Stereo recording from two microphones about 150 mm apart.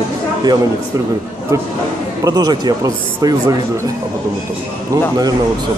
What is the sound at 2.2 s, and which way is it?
Speech, 25° right (ahead or behind).